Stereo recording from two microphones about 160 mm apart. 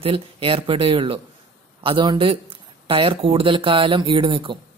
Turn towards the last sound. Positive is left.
turn(degrees=-30)  # may be behind; listen again after turning